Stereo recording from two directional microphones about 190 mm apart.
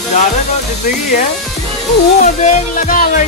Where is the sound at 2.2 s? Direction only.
40° left (ahead or behind).